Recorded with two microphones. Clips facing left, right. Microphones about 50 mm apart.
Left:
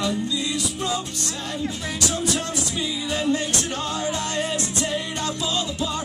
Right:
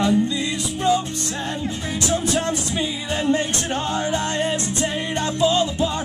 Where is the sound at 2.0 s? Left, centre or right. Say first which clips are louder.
Right 4 dB; right.